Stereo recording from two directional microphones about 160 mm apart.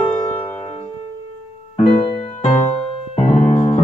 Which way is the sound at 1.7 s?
45° left (ahead or behind).